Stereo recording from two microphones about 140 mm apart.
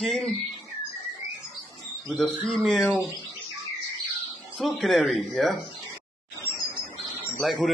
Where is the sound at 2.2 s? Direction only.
5° left (ahead or behind).